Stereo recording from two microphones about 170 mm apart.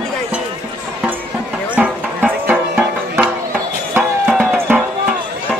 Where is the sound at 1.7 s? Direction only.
10° right (ahead or behind).